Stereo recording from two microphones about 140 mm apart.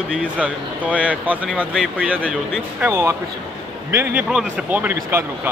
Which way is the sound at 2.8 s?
20° right (ahead or behind).